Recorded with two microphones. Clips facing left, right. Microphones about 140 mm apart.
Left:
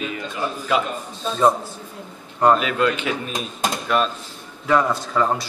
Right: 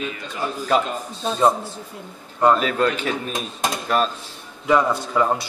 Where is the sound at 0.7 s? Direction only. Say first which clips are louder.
Right 2 dB; 40° right (ahead or behind).